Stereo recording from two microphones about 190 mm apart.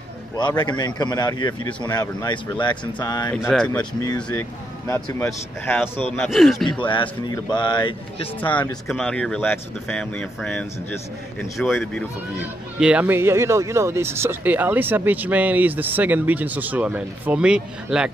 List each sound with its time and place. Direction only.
0.4 s speech: 20° left (ahead or behind)
3.3 s speech: centre (ahead or behind)
4.0 s speech: 20° left (ahead or behind)
6.2 s speech: centre (ahead or behind)
6.9 s speech: 25° left (ahead or behind)
8.4 s speech: 10° left (ahead or behind)